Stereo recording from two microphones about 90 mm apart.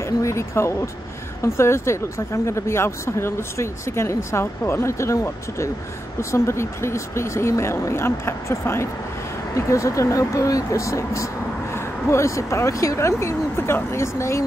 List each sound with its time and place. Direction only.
0.0 s speech: 35° left (ahead or behind)